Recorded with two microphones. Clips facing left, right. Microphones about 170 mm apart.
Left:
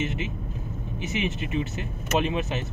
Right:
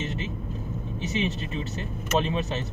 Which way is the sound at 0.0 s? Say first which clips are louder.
Left 3 dB; 15° left (ahead or behind).